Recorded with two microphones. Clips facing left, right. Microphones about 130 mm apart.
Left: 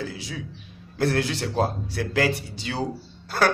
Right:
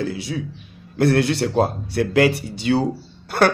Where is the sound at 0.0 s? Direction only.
65° right (ahead or behind).